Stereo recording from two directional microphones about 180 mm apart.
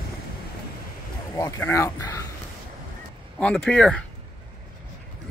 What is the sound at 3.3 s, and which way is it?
Speech, 5° left (ahead or behind).